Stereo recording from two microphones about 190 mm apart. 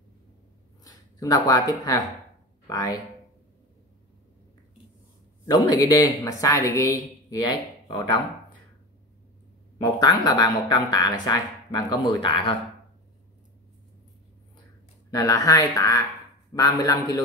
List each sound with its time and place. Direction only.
0.8 s speech: 20° left (ahead or behind)
5.5 s speech: 20° left (ahead or behind)
9.8 s speech: 20° left (ahead or behind)
15.0 s speech: 20° left (ahead or behind)